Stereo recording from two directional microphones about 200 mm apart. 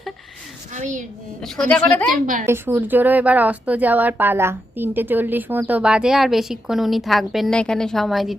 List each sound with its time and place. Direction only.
0.7 s a child's voice: 40° right (ahead or behind)
1.4 s a woman's voice: 5° left (ahead or behind)
2.2 s a child's voice: 40° right (ahead or behind)
2.5 s speech: 10° right (ahead or behind)